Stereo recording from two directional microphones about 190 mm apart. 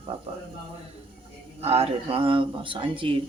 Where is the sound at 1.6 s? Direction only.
30° right (ahead or behind).